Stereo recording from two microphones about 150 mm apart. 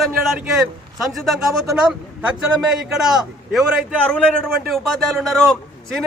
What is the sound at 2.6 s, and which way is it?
A man's voice, 5° right (ahead or behind).